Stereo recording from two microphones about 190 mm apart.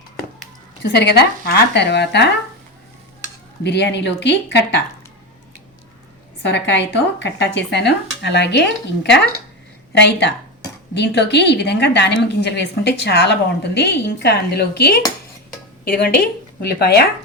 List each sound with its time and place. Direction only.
0.8 s a woman's voice: 60° left (ahead or behind)
3.6 s a woman's voice: 65° left (ahead or behind)
6.4 s a woman's voice: 65° left (ahead or behind)
10.0 s a woman's voice: 70° left (ahead or behind)